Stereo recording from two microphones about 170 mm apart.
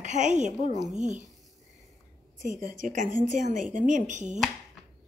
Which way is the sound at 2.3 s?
50° right (ahead or behind).